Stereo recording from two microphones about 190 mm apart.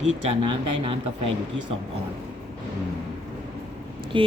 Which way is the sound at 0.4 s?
25° right (ahead or behind).